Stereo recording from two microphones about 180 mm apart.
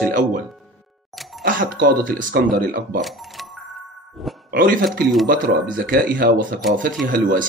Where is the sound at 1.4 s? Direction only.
50° right (ahead or behind).